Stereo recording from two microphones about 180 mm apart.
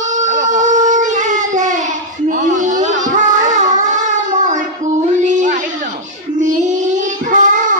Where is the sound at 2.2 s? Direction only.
45° right (ahead or behind).